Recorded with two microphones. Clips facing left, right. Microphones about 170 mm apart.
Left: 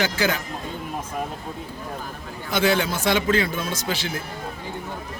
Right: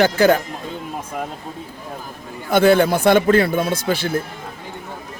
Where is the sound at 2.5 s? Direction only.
55° right (ahead or behind).